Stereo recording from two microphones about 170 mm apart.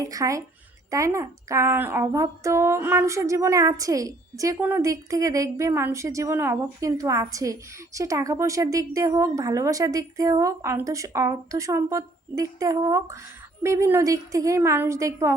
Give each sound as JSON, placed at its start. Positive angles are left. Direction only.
{"t": 0.0, "sound": "a woman's voice", "side_deg": -20}